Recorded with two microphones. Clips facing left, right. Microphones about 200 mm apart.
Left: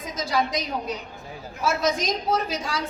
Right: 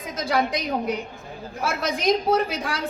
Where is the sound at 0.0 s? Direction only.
55° right (ahead or behind).